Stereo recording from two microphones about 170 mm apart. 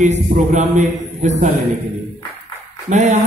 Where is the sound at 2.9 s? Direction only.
40° right (ahead or behind).